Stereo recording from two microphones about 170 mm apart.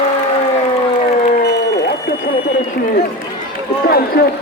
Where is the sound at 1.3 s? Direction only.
75° left (ahead or behind).